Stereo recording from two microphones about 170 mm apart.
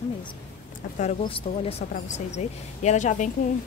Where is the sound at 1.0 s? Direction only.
35° left (ahead or behind).